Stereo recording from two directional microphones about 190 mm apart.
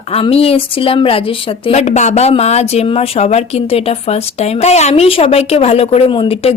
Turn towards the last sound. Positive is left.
turn(degrees=30)  # may be behind; listen again after turning